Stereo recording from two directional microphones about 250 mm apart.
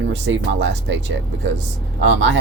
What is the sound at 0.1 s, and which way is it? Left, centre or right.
Speech, right.